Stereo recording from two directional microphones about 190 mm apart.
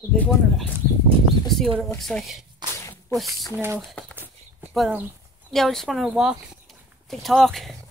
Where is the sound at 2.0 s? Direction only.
Centre (ahead or behind).